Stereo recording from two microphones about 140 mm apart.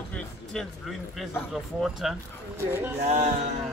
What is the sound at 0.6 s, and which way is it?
Speech, centre (ahead or behind).